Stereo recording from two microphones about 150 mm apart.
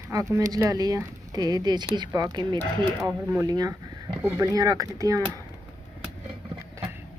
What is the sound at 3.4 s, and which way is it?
Speech, 25° right (ahead or behind).